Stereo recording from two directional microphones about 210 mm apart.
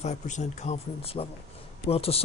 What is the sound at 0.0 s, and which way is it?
Speech, 35° left (ahead or behind).